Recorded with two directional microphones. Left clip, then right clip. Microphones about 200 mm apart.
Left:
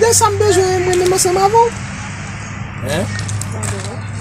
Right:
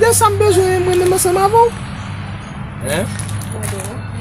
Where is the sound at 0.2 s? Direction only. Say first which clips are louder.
Right 1 dB; 10° left (ahead or behind).